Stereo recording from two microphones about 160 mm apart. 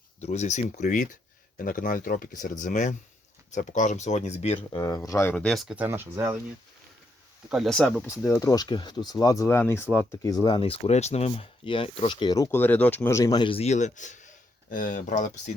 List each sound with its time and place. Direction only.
0.2 s speech: 45° left (ahead or behind)
4.8 s speech: 20° left (ahead or behind)
5.3 s speech: 5° left (ahead or behind)
5.7 s speech: 10° right (ahead or behind)
7.5 s speech: centre (ahead or behind)
8.2 s speech: 20° left (ahead or behind)
10.4 s speech: 35° left (ahead or behind)
12.5 s speech: 10° left (ahead or behind); by 15.5 s 50° left (ahead or behind)